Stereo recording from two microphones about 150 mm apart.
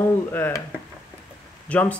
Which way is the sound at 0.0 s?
15° left (ahead or behind).